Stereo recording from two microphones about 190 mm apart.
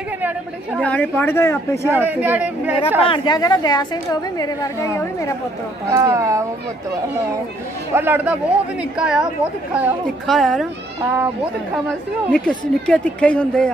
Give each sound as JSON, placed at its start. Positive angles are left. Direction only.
{"t": 0.2, "sound": "speech", "side_deg": -10}
{"t": 0.7, "sound": "speech", "side_deg": 5}
{"t": 1.9, "sound": "speech", "side_deg": -10}
{"t": 3.1, "sound": "a woman's voice", "side_deg": 20}
{"t": 5.9, "sound": "speech", "side_deg": -15}
{"t": 7.9, "sound": "speech", "side_deg": -10}
{"t": 12.3, "sound": "speech", "side_deg": 5}